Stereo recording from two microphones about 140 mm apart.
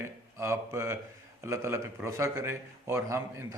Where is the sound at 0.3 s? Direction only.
20° right (ahead or behind).